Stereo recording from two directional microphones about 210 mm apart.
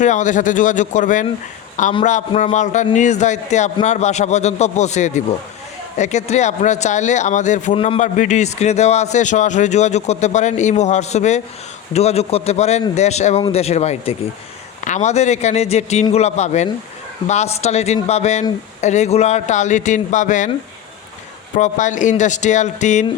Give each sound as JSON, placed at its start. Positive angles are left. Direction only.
{"t": 0.0, "sound": "a man's voice", "side_deg": 35}
{"t": 21.5, "sound": "a man's voice", "side_deg": 35}